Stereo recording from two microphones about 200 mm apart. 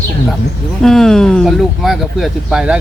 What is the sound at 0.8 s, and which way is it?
Speech, centre (ahead or behind).